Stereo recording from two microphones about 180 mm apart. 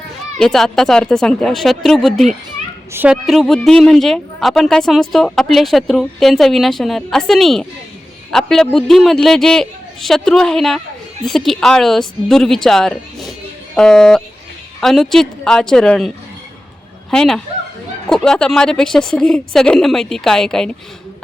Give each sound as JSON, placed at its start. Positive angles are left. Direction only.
{"t": 0.3, "sound": "a woman's voice", "side_deg": 5}